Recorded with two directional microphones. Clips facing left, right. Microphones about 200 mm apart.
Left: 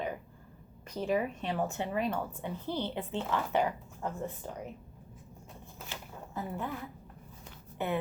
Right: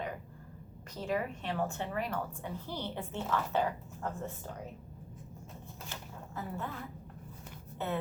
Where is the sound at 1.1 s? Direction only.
20° left (ahead or behind).